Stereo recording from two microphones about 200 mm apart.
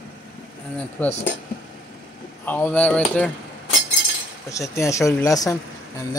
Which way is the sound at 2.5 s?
10° left (ahead or behind).